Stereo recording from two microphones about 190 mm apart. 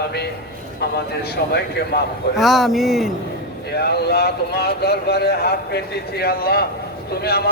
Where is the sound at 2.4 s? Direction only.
Centre (ahead or behind).